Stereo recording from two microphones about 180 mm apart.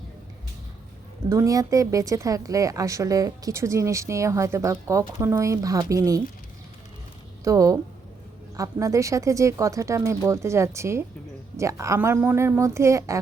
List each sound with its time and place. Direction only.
1.3 s a woman's voice: 20° right (ahead or behind)
7.4 s a woman's voice: 20° right (ahead or behind)